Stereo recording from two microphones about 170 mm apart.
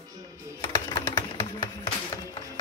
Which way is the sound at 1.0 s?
20° left (ahead or behind).